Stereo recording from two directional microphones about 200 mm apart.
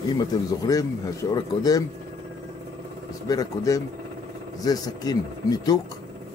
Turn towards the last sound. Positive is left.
turn(degrees=20)  # may be behind; listen again after turning